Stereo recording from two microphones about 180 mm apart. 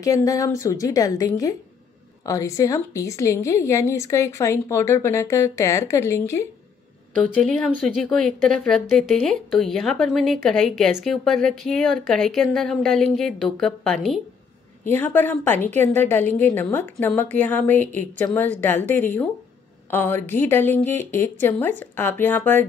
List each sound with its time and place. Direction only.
0.0 s a woman's voice: 20° left (ahead or behind)
7.6 s a woman's voice: 5° left (ahead or behind)